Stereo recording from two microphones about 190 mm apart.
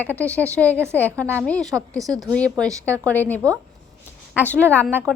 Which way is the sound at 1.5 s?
5° left (ahead or behind).